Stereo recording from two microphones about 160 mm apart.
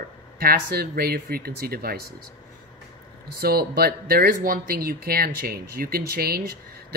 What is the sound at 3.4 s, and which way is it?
Speech, 75° right (ahead or behind).